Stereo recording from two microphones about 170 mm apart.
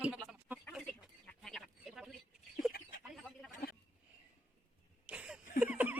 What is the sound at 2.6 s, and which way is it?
Chicken, centre (ahead or behind).